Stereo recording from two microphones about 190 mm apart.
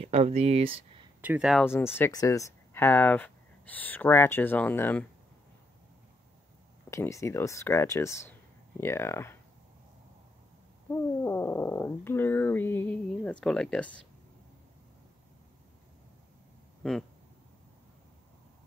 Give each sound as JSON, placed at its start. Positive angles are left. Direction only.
{"t": 0.0, "sound": "speech", "side_deg": -35}
{"t": 1.2, "sound": "speech", "side_deg": -5}
{"t": 1.6, "sound": "speech", "side_deg": 10}
{"t": 6.9, "sound": "speech", "side_deg": 15}
{"t": 10.9, "sound": "speech", "side_deg": 15}
{"t": 16.8, "sound": "speech", "side_deg": 5}